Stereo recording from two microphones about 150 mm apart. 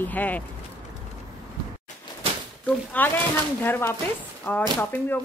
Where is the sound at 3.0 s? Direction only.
10° left (ahead or behind).